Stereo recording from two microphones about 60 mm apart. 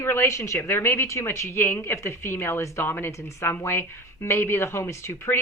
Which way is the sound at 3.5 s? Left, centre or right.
Left.